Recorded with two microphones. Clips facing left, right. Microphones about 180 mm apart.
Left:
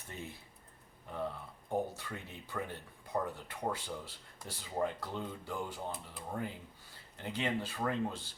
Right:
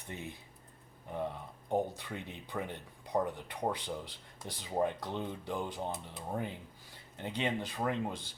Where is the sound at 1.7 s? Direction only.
20° right (ahead or behind).